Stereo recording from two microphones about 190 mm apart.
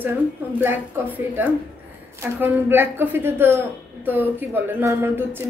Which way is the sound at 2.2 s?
10° right (ahead or behind).